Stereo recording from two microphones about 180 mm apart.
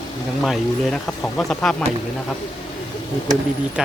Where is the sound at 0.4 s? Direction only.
Centre (ahead or behind).